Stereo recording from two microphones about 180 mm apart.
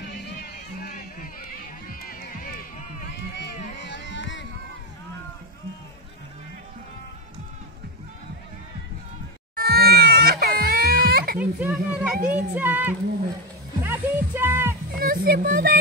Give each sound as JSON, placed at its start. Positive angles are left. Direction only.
{"t": 0.0, "sound": "run", "side_deg": 65}
{"t": 3.1, "sound": "run", "side_deg": 70}
{"t": 9.6, "sound": "crying", "side_deg": -60}
{"t": 11.3, "sound": "a child's voice", "side_deg": -10}
{"t": 13.8, "sound": "music", "side_deg": -10}
{"t": 15.0, "sound": "speech", "side_deg": -55}